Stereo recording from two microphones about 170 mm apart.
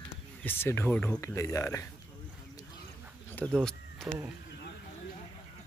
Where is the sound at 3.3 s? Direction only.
5° left (ahead or behind).